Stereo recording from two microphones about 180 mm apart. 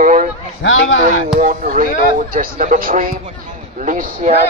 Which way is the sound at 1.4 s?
50° right (ahead or behind).